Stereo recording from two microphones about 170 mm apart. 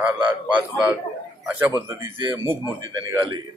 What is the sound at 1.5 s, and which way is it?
A man's voice, 15° right (ahead or behind).